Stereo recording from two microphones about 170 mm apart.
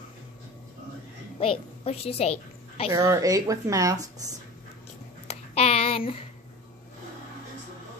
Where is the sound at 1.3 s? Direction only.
35° left (ahead or behind).